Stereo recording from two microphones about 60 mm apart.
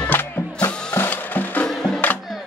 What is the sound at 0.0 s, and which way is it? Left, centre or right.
Music, left.